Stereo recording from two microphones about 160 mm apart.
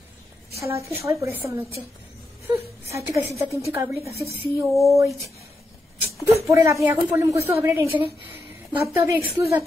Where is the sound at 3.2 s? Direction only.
20° right (ahead or behind).